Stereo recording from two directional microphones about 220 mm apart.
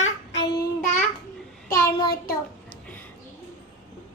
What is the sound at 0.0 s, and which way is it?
Child singing, 55° left (ahead or behind).